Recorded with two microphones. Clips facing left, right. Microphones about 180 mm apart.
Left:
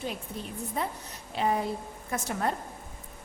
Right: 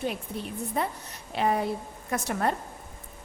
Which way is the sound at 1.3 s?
65° right (ahead or behind).